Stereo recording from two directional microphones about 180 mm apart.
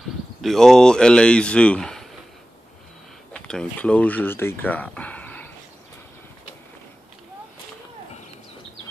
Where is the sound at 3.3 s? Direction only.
5° left (ahead or behind).